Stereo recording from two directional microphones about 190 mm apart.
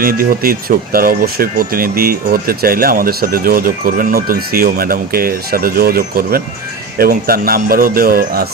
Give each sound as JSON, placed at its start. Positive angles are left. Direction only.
{"t": 0.0, "sound": "speech", "side_deg": -50}